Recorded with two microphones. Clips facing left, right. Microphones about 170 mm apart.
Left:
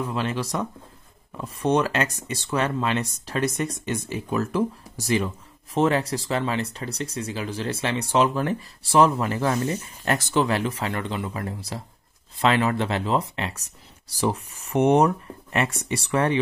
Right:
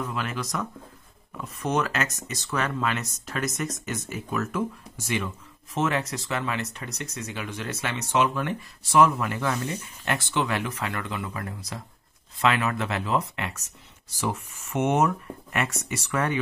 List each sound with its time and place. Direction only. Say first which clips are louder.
0.0 s speech: left 4 dB; 30° left (ahead or behind)